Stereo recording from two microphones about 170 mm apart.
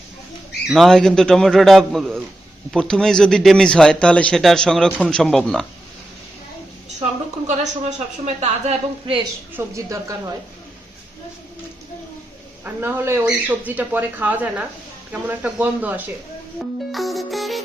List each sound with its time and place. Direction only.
0.7 s speech: centre (ahead or behind)
7.4 s a woman's voice: 45° right (ahead or behind)
9.6 s speech: 20° right (ahead or behind)
12.6 s speech: 10° right (ahead or behind)